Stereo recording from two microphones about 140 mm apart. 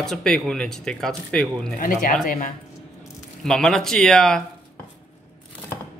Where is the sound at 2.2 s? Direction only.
75° left (ahead or behind).